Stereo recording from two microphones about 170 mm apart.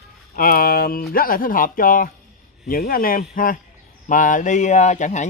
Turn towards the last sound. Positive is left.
turn(degrees=45)  # may be behind; listen again after turning